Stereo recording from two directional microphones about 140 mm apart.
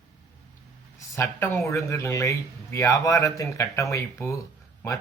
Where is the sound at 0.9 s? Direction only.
20° left (ahead or behind).